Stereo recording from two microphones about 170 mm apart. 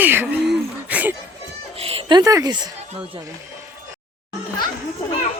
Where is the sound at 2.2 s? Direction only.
20° right (ahead or behind).